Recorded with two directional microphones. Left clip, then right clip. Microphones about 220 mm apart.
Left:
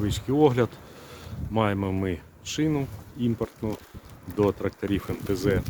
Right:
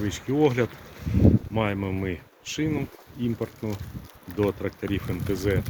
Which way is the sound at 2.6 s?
20° left (ahead or behind).